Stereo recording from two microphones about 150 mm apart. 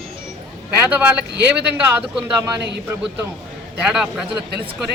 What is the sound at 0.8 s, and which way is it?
Speech, 10° right (ahead or behind).